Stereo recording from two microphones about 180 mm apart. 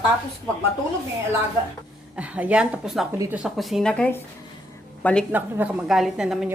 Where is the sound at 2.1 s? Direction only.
5° right (ahead or behind).